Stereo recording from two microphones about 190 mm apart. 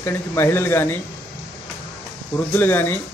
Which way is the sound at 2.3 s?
10° left (ahead or behind).